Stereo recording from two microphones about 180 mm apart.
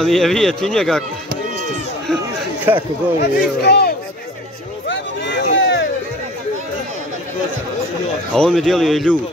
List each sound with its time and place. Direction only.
0.0 s speech: centre (ahead or behind)
2.7 s speech: 10° right (ahead or behind)
3.2 s speech: 60° left (ahead or behind)
4.8 s a sound: 80° left
8.4 s speech: centre (ahead or behind)